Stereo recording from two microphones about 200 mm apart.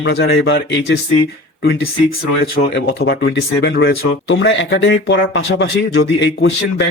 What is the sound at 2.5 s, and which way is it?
Speech, 55° left (ahead or behind).